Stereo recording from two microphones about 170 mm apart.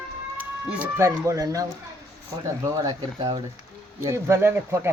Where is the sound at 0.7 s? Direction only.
10° right (ahead or behind).